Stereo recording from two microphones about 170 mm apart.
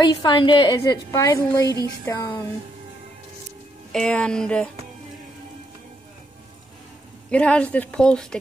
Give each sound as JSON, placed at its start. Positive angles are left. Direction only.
{"t": 0.0, "sound": "a woman's voice", "side_deg": 25}
{"t": 3.9, "sound": "speech", "side_deg": 5}
{"t": 7.2, "sound": "a woman's voice", "side_deg": 5}